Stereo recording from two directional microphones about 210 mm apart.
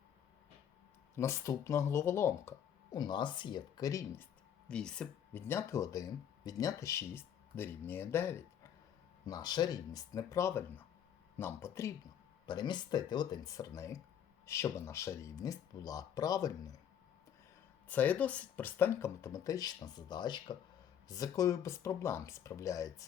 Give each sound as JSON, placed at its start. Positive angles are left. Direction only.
{"t": 1.1, "sound": "speech", "side_deg": 15}
{"t": 17.8, "sound": "speech", "side_deg": 10}